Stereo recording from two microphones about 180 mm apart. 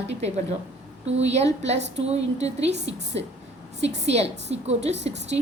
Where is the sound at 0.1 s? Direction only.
35° right (ahead or behind).